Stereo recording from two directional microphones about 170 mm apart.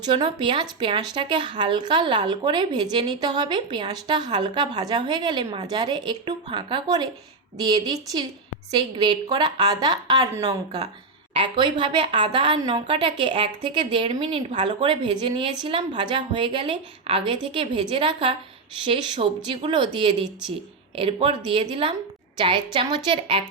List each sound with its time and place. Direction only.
0.0 s a woman's voice: 30° right (ahead or behind)